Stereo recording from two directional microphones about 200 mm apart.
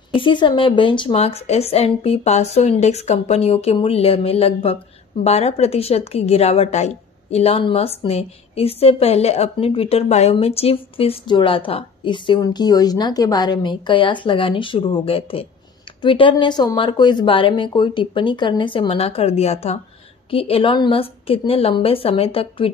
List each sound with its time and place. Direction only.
0.1 s a woman's voice: 25° left (ahead or behind)